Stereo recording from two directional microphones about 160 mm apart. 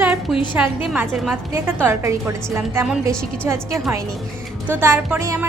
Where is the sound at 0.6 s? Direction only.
10° right (ahead or behind).